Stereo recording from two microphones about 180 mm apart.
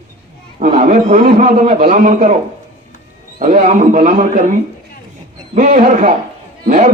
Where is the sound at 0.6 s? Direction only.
45° right (ahead or behind).